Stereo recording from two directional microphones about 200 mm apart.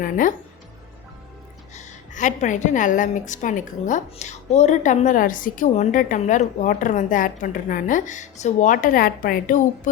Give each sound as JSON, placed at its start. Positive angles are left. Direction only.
{"t": 0.0, "sound": "speech", "side_deg": 40}
{"t": 1.7, "sound": "a woman's voice", "side_deg": 35}